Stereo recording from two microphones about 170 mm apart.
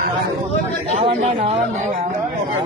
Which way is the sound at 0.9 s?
40° right (ahead or behind).